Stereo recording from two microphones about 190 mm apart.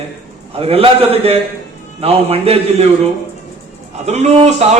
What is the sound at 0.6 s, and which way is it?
A man's voice, 30° right (ahead or behind).